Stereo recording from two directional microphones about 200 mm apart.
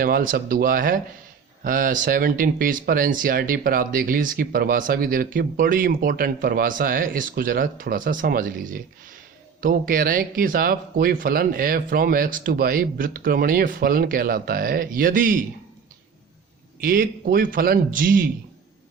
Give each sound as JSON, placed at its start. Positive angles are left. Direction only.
{"t": 0.0, "sound": "speech", "side_deg": -45}
{"t": 16.8, "sound": "speech", "side_deg": -45}